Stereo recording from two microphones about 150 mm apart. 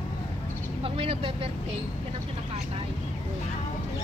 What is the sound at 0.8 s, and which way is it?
Speech, 40° right (ahead or behind).